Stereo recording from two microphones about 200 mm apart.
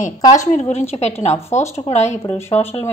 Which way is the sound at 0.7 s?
30° left (ahead or behind).